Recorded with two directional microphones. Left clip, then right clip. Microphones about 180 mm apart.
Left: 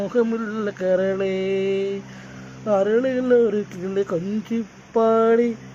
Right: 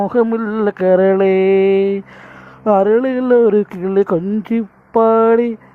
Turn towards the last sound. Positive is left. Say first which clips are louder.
# right 6 dB
turn(degrees=-45)  # may be behind; listen again after turning